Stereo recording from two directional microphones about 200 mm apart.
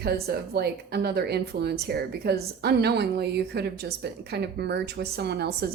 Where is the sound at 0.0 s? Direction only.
55° right (ahead or behind).